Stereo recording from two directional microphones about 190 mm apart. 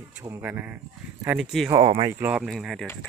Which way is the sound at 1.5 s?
Centre (ahead or behind).